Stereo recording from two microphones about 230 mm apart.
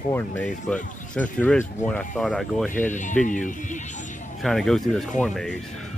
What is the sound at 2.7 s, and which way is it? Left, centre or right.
Speech, left.